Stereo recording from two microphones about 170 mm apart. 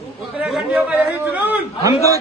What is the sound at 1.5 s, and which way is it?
Speech, 20° right (ahead or behind).